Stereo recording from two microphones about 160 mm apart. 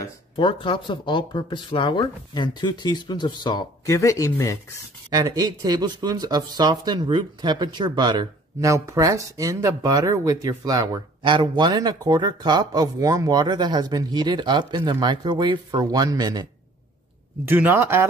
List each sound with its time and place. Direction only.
0.4 s speech: 30° left (ahead or behind)
5.1 s speech: 25° right (ahead or behind)
17.5 s speech: 15° right (ahead or behind)